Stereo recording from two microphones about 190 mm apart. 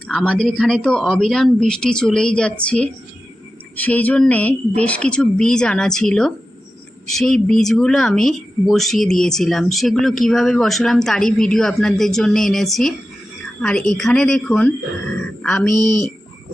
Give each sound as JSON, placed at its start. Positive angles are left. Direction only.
{"t": 0.1, "sound": "speech", "side_deg": 0}
{"t": 15.7, "sound": "speech", "side_deg": -20}